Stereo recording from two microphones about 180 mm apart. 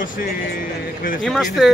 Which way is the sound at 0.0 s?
50° left (ahead or behind).